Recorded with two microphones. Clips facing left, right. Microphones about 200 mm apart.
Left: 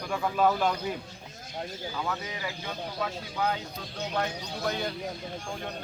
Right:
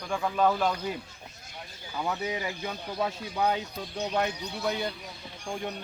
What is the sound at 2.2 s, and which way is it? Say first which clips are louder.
Speech: right 5 dB; 20° right (ahead or behind).